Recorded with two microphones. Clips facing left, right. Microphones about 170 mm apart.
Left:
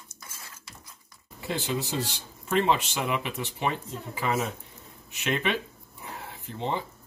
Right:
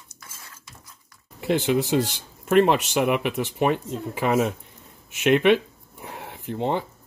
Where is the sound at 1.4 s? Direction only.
60° right (ahead or behind).